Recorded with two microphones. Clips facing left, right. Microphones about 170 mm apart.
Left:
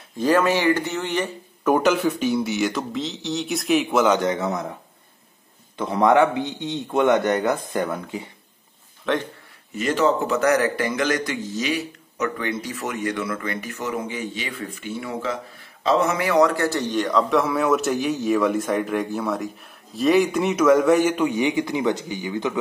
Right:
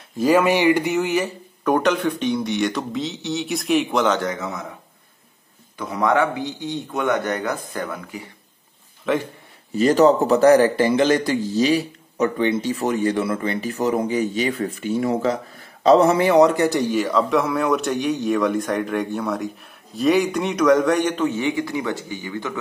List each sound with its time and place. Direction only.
0.2 s speech: 10° right (ahead or behind)
1.6 s a man's voice: 5° left (ahead or behind)
5.8 s a man's voice: 25° left (ahead or behind)
9.0 s speech: 5° right (ahead or behind)
9.8 s a man's voice: 35° right (ahead or behind); by 22.5 s 20° left (ahead or behind)